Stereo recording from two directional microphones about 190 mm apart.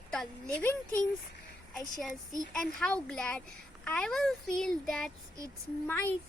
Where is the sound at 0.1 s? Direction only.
5° left (ahead or behind).